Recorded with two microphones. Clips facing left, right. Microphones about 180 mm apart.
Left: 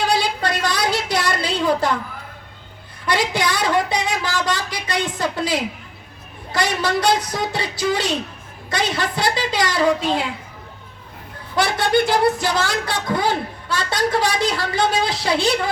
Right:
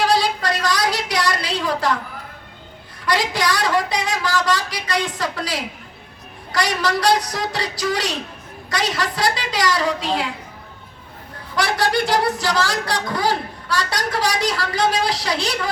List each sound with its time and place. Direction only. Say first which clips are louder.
0.2 s a sound: even; 25° left (ahead or behind)
3.1 s speech: even; 25° left (ahead or behind)
11.5 s speech: left 2 dB; 25° left (ahead or behind)